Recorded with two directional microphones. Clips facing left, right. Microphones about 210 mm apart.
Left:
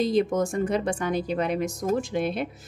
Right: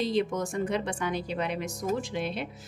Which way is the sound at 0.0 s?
45° left (ahead or behind).